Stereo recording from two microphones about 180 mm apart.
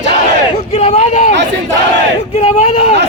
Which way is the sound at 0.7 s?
40° left (ahead or behind).